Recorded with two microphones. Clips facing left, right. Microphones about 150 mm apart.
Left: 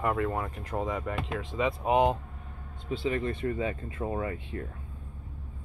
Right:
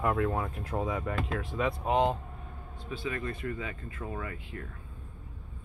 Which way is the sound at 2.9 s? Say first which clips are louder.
Left 6 dB; 25° left (ahead or behind).